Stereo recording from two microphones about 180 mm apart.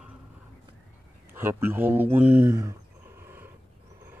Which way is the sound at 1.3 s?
10° right (ahead or behind).